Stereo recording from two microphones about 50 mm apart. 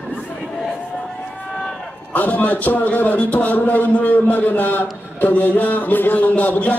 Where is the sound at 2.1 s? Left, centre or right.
Left.